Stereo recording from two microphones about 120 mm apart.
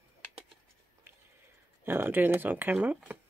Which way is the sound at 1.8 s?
15° right (ahead or behind).